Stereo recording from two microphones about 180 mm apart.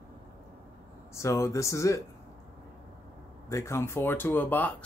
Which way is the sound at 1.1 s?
15° left (ahead or behind).